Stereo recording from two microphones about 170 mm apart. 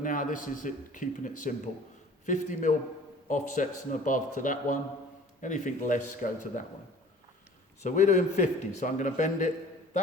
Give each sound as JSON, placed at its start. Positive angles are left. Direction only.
{"t": 0.0, "sound": "a man's voice", "side_deg": 50}
{"t": 7.8, "sound": "a man's voice", "side_deg": 45}